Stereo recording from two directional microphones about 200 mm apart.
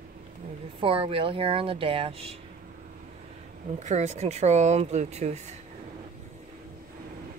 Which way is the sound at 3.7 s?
35° right (ahead or behind).